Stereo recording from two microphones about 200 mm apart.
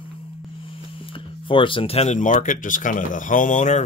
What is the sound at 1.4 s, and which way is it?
Speech, 25° left (ahead or behind).